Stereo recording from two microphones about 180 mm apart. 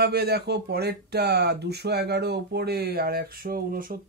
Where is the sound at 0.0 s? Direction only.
60° right (ahead or behind).